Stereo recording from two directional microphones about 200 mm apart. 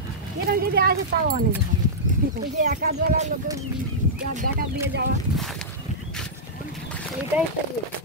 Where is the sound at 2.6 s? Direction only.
35° right (ahead or behind).